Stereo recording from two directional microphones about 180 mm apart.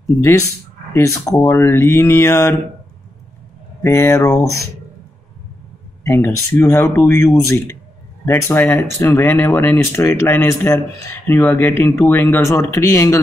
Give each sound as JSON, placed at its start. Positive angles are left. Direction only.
{"t": 0.9, "sound": "speech", "side_deg": 15}
{"t": 3.8, "sound": "speech", "side_deg": 15}
{"t": 6.0, "sound": "speech", "side_deg": 15}